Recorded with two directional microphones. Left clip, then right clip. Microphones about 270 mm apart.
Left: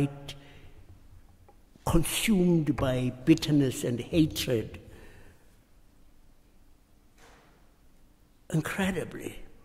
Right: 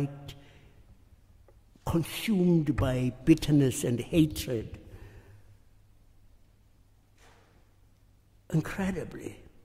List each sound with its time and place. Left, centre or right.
0.0 s a sound: centre
1.9 s speech: centre
8.5 s speech: centre